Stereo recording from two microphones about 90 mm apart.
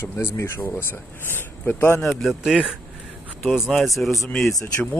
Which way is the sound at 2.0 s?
Centre (ahead or behind).